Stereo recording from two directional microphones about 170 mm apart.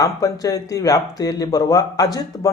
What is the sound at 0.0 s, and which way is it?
Speech, 20° left (ahead or behind).